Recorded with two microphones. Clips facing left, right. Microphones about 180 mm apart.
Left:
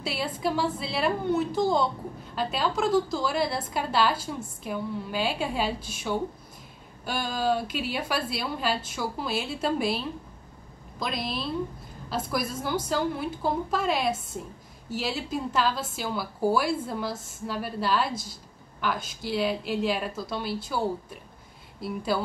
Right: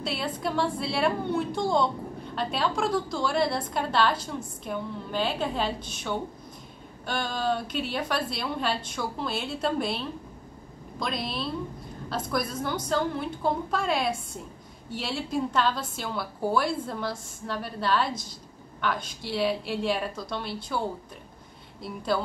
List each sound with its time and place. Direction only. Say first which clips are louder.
0.0 s a woman's voice: left 1 dB; 5° left (ahead or behind)